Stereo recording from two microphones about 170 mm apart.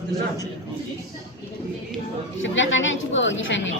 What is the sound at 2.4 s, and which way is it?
A woman's voice, 90° left.